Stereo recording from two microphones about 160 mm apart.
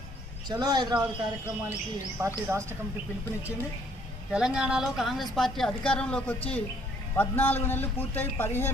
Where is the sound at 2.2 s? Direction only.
15° right (ahead or behind).